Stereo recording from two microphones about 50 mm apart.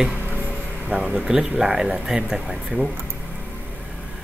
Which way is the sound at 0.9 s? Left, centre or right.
Centre.